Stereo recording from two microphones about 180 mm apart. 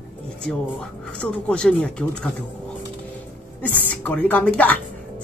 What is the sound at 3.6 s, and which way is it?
Speech, 10° left (ahead or behind).